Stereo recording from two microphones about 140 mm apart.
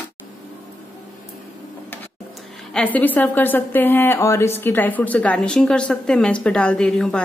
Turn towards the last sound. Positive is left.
turn(degrees=5)  # may be behind; listen again after turning